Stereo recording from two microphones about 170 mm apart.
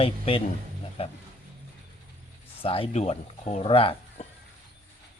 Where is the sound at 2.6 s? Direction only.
35° left (ahead or behind).